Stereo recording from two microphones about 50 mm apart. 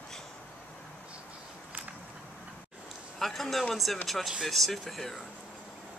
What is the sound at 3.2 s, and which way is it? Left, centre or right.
Speech, centre.